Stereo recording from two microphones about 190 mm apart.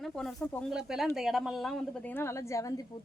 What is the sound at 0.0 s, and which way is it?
A woman's voice, centre (ahead or behind).